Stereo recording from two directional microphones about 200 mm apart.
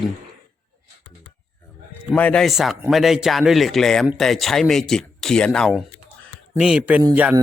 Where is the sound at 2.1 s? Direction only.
5° left (ahead or behind).